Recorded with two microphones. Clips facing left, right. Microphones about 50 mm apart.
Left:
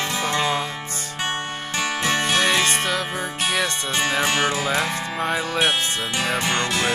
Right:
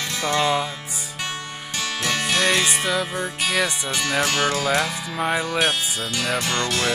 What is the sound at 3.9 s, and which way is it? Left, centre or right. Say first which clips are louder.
Music: left 1 dB; left.